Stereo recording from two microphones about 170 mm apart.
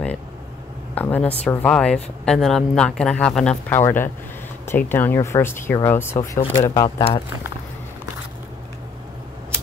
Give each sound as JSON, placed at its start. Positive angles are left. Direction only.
{"t": 0.9, "sound": "speech", "side_deg": 10}
{"t": 6.7, "sound": "speech", "side_deg": 25}